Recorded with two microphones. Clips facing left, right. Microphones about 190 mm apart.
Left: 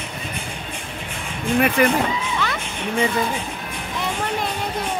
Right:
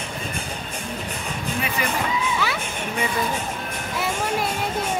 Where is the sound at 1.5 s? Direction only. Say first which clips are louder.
Left 11 dB; 55° left (ahead or behind).